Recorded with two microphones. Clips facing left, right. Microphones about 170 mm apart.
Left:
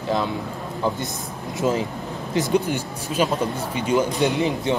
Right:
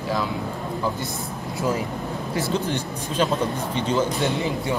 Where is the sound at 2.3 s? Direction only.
15° left (ahead or behind).